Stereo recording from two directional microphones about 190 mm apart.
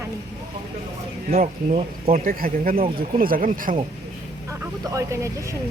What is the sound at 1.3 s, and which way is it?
Speech, 35° right (ahead or behind).